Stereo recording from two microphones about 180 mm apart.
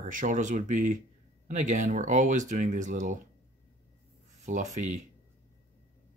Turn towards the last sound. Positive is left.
turn(degrees=-45)  # may be behind; listen again after turning